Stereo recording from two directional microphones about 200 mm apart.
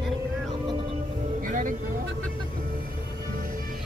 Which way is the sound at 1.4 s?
40° right (ahead or behind).